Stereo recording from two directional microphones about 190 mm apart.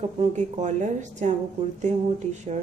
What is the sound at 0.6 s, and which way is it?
Speech, 40° right (ahead or behind).